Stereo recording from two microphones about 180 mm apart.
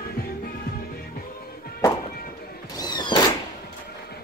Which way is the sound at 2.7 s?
25° left (ahead or behind).